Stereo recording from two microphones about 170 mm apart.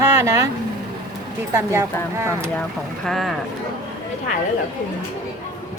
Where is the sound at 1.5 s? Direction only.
15° right (ahead or behind).